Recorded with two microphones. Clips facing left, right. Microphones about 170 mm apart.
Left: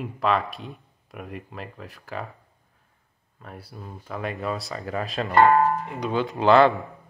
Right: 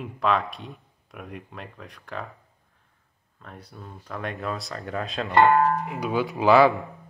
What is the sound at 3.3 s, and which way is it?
Speech, 5° left (ahead or behind).